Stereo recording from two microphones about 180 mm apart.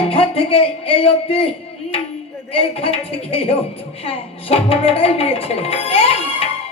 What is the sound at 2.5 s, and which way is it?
Speech, 30° left (ahead or behind).